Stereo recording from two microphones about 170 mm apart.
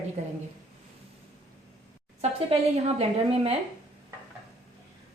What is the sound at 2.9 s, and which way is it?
Speech, 35° right (ahead or behind).